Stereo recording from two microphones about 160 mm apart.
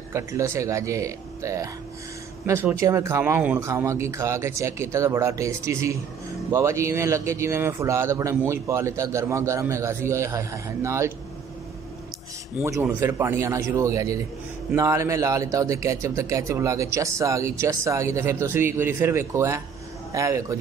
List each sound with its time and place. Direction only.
0.1 s a man's voice: 20° right (ahead or behind)
12.5 s speech: 15° right (ahead or behind)